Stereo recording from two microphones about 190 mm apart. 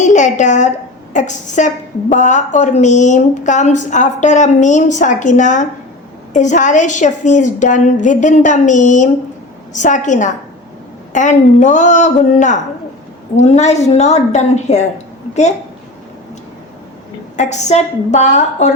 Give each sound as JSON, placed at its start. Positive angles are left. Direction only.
{"t": 0.0, "sound": "a sound", "side_deg": 40}
{"t": 1.1, "sound": "a woman's voice", "side_deg": 40}
{"t": 17.3, "sound": "a woman's voice", "side_deg": 35}